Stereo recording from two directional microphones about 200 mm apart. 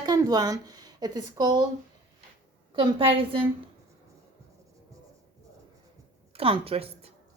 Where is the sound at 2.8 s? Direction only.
25° right (ahead or behind).